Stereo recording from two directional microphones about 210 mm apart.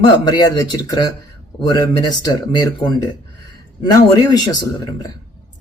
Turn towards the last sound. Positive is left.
turn(degrees=20)  # may be behind; listen again after turning